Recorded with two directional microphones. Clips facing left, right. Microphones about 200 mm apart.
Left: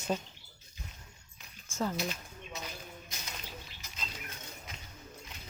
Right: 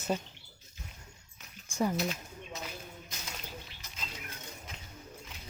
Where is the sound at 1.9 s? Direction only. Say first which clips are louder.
Right 3 dB; centre (ahead or behind).